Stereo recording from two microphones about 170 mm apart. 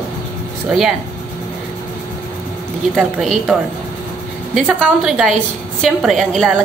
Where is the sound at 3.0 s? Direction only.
Centre (ahead or behind).